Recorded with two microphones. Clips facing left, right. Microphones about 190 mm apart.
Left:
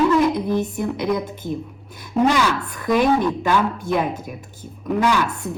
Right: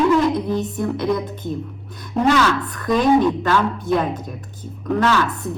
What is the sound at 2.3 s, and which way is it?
A woman's voice, 10° left (ahead or behind).